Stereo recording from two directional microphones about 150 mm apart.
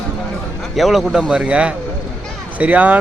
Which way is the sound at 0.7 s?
Centre (ahead or behind).